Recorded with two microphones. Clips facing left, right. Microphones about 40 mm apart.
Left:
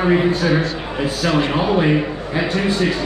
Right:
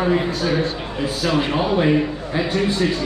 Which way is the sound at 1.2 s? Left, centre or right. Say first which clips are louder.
Left 1 dB; centre.